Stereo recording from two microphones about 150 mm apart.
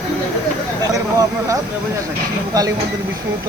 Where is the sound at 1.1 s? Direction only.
20° right (ahead or behind).